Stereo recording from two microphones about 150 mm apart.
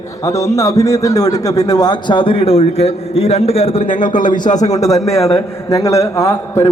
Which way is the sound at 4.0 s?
60° left (ahead or behind).